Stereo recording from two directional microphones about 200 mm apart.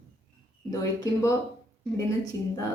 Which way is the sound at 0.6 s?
15° left (ahead or behind).